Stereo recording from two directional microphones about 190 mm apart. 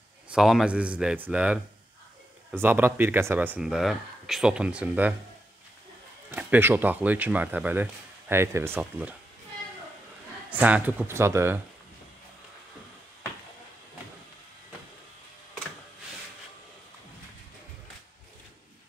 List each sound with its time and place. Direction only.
0.3 s a man's voice: centre (ahead or behind)
6.3 s speech: 10° right (ahead or behind)
10.5 s speech: 10° right (ahead or behind)